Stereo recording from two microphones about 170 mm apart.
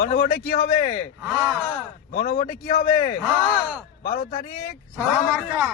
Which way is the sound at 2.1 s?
70° left (ahead or behind).